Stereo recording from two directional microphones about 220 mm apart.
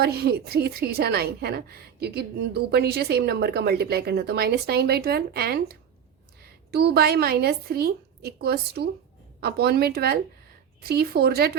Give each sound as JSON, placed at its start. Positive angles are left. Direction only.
{"t": 0.0, "sound": "a woman's voice", "side_deg": -45}